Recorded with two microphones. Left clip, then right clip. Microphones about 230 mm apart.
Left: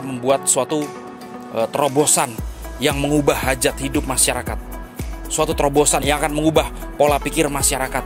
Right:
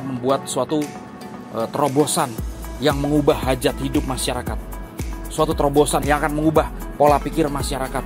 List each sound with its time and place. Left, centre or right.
0.2 s speech: left